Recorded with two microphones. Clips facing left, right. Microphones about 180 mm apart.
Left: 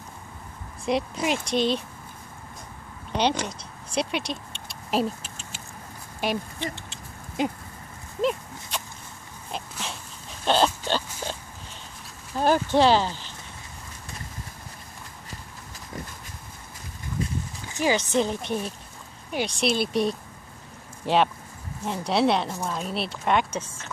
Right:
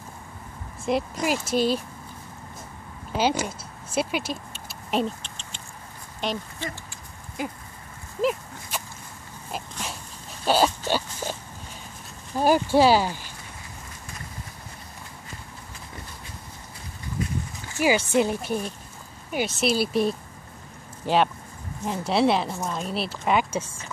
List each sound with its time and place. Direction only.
0.8 s a woman's voice: centre (ahead or behind)
3.1 s vehicle: 5° right (ahead or behind)
6.2 s a sound: 20° left (ahead or behind)
8.2 s dog: 5° right (ahead or behind)
10.4 s a sound: 5° right (ahead or behind)
10.9 s oink: 10° right (ahead or behind)
12.4 s speech: 10° right (ahead or behind)
17.8 s a woman's voice: 10° right (ahead or behind)